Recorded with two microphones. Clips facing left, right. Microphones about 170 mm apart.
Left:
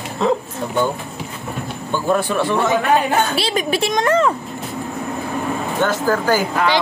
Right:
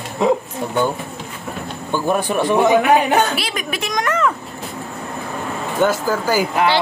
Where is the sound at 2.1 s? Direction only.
15° right (ahead or behind).